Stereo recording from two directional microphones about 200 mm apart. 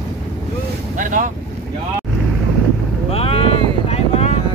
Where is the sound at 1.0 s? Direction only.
40° right (ahead or behind).